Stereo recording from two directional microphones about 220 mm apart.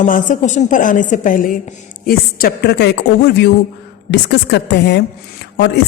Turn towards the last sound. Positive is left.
turn(degrees=50)  # may be behind; listen again after turning